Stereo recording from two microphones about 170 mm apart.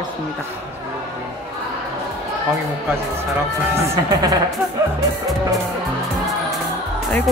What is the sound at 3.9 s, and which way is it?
Speech, 20° right (ahead or behind).